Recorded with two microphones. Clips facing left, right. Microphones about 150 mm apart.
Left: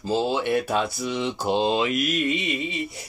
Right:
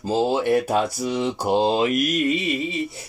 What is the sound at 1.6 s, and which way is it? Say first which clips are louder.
Speech: right 3 dB; 35° right (ahead or behind).